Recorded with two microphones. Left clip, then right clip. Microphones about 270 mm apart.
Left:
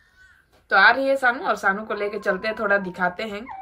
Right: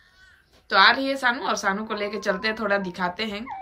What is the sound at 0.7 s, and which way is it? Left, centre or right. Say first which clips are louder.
A child's voice: left 2 dB; centre.